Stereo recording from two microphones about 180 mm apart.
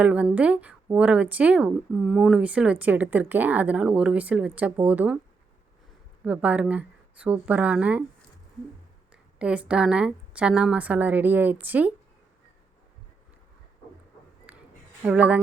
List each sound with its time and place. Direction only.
0.0 s speech: 5° right (ahead or behind)
6.2 s speech: 10° right (ahead or behind)
9.4 s speech: 5° right (ahead or behind)
14.5 s a sound: 10° right (ahead or behind)
15.0 s speech: 5° right (ahead or behind)